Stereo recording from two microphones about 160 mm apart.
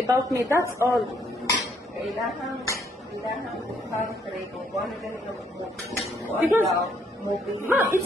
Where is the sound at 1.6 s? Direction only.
Centre (ahead or behind).